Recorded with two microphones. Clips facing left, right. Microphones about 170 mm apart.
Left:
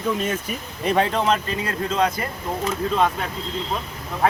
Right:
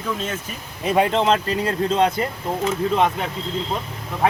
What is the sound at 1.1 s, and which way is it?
Speech, 25° right (ahead or behind).